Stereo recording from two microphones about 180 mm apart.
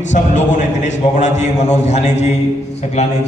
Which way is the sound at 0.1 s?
40° left (ahead or behind).